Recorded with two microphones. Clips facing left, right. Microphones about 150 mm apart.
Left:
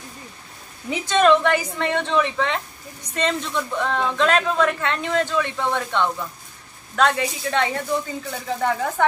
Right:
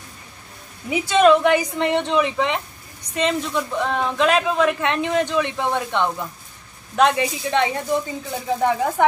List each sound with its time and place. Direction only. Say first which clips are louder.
0.8 s speech: right 2 dB; 10° right (ahead or behind)